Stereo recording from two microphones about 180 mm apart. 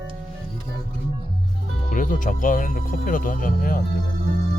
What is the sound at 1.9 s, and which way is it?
Speech, 45° left (ahead or behind).